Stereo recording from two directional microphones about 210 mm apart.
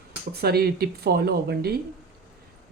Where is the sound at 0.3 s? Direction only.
45° right (ahead or behind).